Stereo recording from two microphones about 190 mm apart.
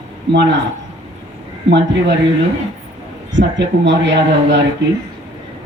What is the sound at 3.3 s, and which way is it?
A woman's voice, 70° right (ahead or behind).